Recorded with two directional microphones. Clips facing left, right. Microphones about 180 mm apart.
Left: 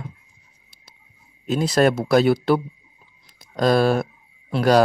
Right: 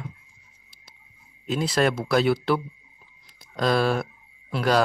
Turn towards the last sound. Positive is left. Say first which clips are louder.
# left 5 dB
turn(degrees=40)  # may be behind; listen again after turning